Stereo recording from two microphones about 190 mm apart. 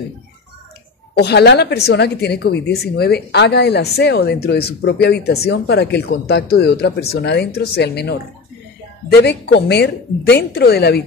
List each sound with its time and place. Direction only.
1.1 s a woman's voice: 60° left (ahead or behind)